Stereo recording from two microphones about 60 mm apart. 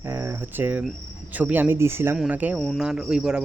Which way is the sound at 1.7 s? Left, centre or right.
Right.